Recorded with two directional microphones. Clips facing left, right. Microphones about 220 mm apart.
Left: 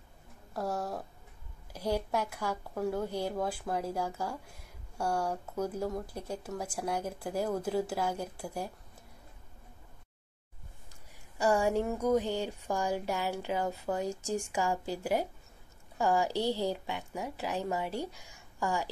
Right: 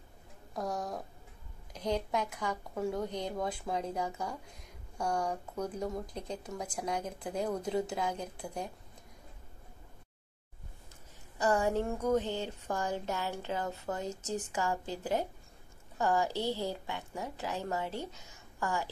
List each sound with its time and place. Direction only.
0.6 s a woman's voice: 5° left (ahead or behind)
11.3 s a woman's voice: 10° left (ahead or behind)